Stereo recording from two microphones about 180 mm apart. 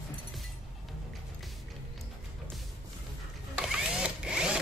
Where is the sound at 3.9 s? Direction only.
5° right (ahead or behind).